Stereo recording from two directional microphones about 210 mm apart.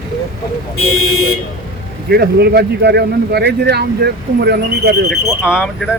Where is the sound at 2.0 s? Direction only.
50° right (ahead or behind).